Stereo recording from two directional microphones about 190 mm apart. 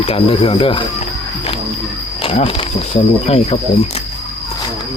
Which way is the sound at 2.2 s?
30° left (ahead or behind).